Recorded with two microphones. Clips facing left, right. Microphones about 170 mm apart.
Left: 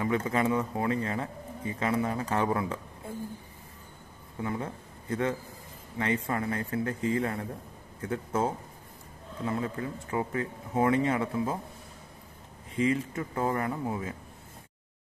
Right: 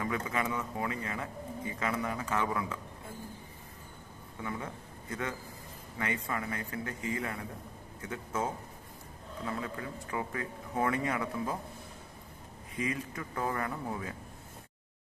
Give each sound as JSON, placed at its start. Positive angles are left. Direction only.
{"t": 0.0, "sound": "speech", "side_deg": 30}
{"t": 4.4, "sound": "speech", "side_deg": 30}
{"t": 9.5, "sound": "a man's voice", "side_deg": 30}
{"t": 12.7, "sound": "a man's voice", "side_deg": 30}